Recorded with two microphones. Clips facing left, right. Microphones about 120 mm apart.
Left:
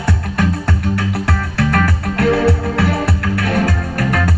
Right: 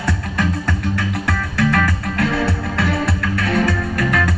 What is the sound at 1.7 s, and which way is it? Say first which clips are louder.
Music: left 2 dB; 55° left (ahead or behind).